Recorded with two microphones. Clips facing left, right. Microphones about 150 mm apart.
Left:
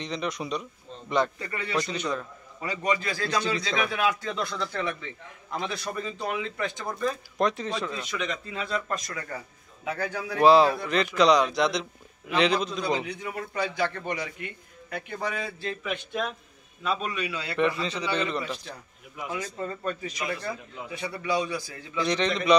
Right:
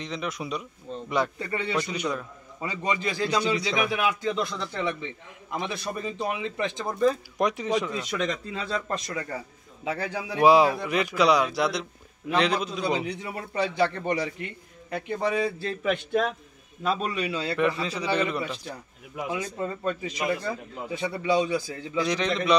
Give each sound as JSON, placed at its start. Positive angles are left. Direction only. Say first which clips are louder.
{"t": 0.0, "sound": "a man's voice", "louder": "left 1 dB", "side_deg": -5}
{"t": 1.4, "sound": "a man's voice", "louder": "right 3 dB", "side_deg": -25}
{"t": 1.8, "sound": "speech", "louder": "even", "side_deg": -10}
{"t": 2.6, "sound": "a man's voice", "louder": "even", "side_deg": -25}
{"t": 7.3, "sound": "speech", "louder": "right 2 dB", "side_deg": -15}
{"t": 8.2, "sound": "a man's voice", "louder": "right 2 dB", "side_deg": -35}
{"t": 13.0, "sound": "a man's voice", "louder": "right 1 dB", "side_deg": -30}
{"t": 17.6, "sound": "a man's voice", "louder": "left 2 dB", "side_deg": -5}
{"t": 19.3, "sound": "a man's voice", "louder": "right 1 dB", "side_deg": -25}
{"t": 21.9, "sound": "a man's voice", "louder": "even", "side_deg": -5}